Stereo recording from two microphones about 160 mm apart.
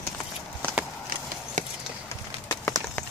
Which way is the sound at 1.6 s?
50° right (ahead or behind).